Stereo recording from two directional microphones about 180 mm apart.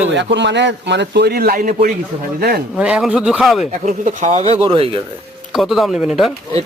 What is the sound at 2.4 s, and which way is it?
Speech, 60° right (ahead or behind).